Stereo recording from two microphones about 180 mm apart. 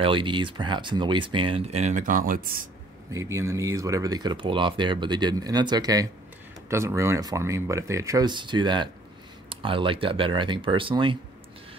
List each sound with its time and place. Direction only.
0.0 s speech: 25° right (ahead or behind); by 2.7 s 50° right (ahead or behind)
3.1 s speech: 15° right (ahead or behind)